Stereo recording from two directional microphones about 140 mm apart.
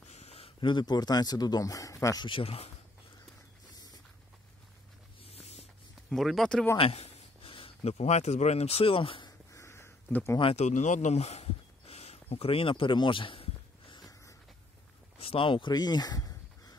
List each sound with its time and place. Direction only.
0.1 s speech: 50° left (ahead or behind); by 2.2 s 25° left (ahead or behind)
2.2 s speech: 40° left (ahead or behind)
3.7 s dog: 25° left (ahead or behind)
5.3 s a sound: 50° left (ahead or behind)
6.0 s speech: centre (ahead or behind)
6.8 s speech: 45° left (ahead or behind)
9.5 s a sound: 20° left (ahead or behind)
10.4 s speech: 50° left (ahead or behind)
13.9 s a sound: 25° left (ahead or behind)
15.1 s speech: 40° left (ahead or behind); by 16.7 s 25° left (ahead or behind)